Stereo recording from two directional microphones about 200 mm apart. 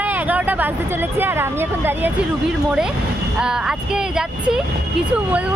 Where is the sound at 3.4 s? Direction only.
5° right (ahead or behind).